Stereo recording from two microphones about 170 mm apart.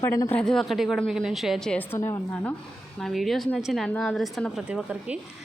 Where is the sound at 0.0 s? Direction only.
15° left (ahead or behind).